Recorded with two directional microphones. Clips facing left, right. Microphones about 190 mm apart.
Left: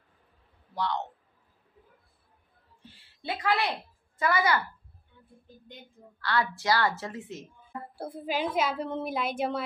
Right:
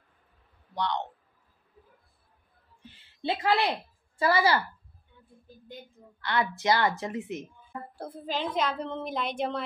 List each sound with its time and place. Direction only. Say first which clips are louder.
0.7 s a man's voice: even; 5° left (ahead or behind)
2.8 s a woman's voice: right 8 dB; 25° right (ahead or behind)
6.2 s a woman's voice: right 1 dB; 20° right (ahead or behind)
7.9 s a woman's voice: left 2 dB; 10° left (ahead or behind)